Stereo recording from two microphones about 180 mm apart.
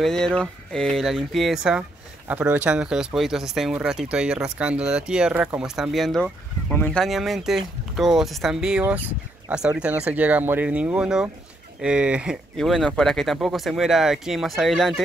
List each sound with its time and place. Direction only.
0.0 s speech: centre (ahead or behind)